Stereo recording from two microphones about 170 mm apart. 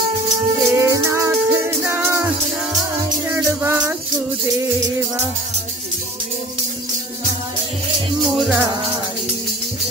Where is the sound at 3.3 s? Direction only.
15° right (ahead or behind).